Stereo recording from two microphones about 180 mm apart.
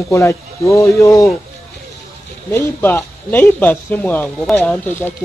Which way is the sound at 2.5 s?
10° left (ahead or behind).